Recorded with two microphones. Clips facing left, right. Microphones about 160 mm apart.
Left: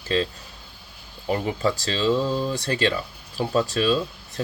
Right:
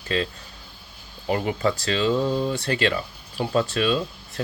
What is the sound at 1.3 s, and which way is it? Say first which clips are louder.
A man's voice: even; 35° left (ahead or behind).